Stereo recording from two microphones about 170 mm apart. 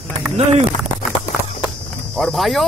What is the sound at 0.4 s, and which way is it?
Speech, 40° right (ahead or behind).